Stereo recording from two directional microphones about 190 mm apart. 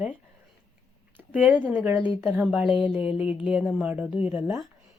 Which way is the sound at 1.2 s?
10° right (ahead or behind).